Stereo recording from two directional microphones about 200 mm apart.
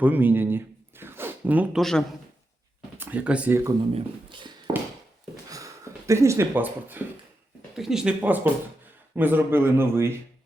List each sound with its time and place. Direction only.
0.0 s speech: 10° right (ahead or behind)
3.9 s speech: 25° right (ahead or behind)
5.5 s a sound: 15° right (ahead or behind)
7.8 s speech: centre (ahead or behind)